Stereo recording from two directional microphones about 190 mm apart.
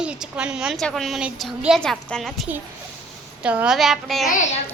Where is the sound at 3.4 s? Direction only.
5° right (ahead or behind).